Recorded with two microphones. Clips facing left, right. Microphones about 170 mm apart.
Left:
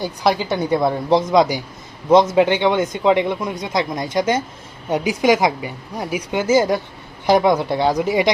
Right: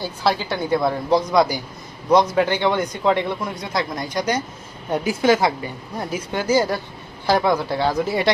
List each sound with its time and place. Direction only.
0.0 s a woman's voice: 15° left (ahead or behind)